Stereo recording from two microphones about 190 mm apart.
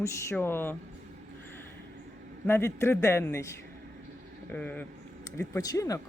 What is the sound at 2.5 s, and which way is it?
A man's voice, 15° left (ahead or behind).